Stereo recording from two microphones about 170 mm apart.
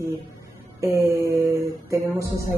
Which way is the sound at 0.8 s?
15° right (ahead or behind).